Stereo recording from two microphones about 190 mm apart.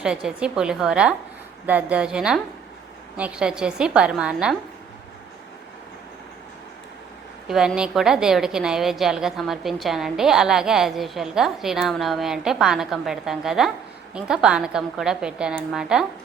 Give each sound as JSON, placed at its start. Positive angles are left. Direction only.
{"t": 0.0, "sound": "a woman's voice", "side_deg": -5}
{"t": 7.4, "sound": "a woman's voice", "side_deg": 0}